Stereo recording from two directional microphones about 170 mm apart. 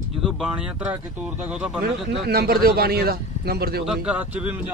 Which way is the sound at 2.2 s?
65° right (ahead or behind).